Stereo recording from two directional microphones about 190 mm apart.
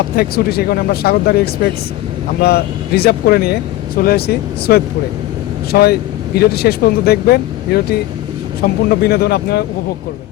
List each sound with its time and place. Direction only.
0.2 s speech: 55° left (ahead or behind)